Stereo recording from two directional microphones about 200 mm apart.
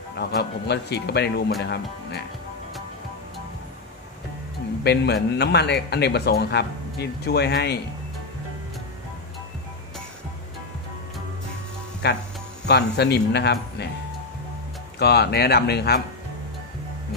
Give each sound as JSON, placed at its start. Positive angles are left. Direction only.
{"t": 0.2, "sound": "speech", "side_deg": 55}
{"t": 4.8, "sound": "speech", "side_deg": 55}
{"t": 12.0, "sound": "speech", "side_deg": 55}
{"t": 15.0, "sound": "speech", "side_deg": 55}